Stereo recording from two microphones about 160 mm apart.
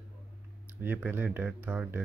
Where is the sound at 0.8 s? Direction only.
10° right (ahead or behind).